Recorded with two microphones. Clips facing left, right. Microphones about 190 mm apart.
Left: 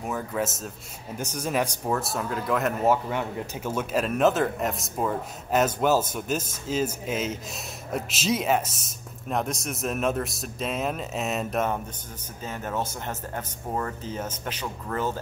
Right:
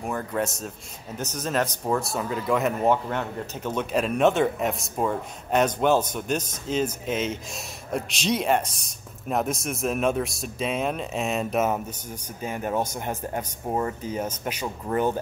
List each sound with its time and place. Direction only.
0.0 s speech: centre (ahead or behind); by 15.1 s 20° right (ahead or behind)